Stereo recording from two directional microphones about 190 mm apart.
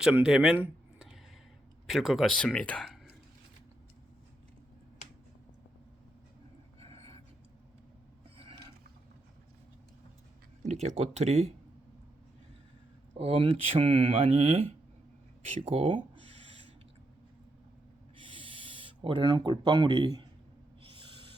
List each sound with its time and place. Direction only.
0.0 s speech: 5° right (ahead or behind)
6.7 s a sound: 30° right (ahead or behind)
10.6 s speech: 35° right (ahead or behind)
13.1 s speech: 30° right (ahead or behind)
18.2 s a sound: 25° right (ahead or behind)
20.9 s owl: 25° right (ahead or behind)